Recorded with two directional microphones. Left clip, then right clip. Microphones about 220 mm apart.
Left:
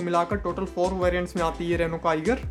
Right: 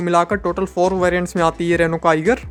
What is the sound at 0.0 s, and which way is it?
Speech, 40° right (ahead or behind).